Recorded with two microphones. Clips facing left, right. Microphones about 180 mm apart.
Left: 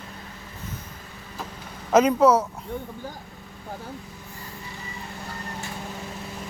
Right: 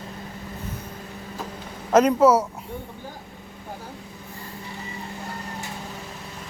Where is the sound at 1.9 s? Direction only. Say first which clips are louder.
Right 1 dB; 5° left (ahead or behind).